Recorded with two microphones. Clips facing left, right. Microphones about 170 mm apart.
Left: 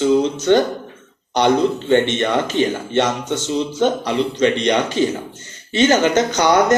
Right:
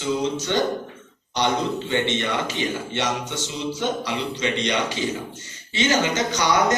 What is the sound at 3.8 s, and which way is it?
Speech, 55° left (ahead or behind).